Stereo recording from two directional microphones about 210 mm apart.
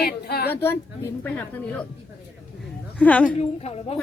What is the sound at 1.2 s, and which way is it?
Speech, 5° left (ahead or behind).